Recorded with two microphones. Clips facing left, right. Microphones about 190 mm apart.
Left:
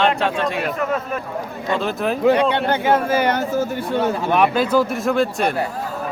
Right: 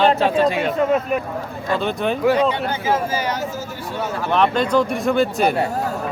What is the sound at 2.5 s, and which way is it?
Speech, 65° left (ahead or behind).